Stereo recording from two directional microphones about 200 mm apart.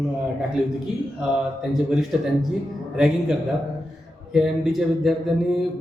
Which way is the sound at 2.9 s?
5° right (ahead or behind).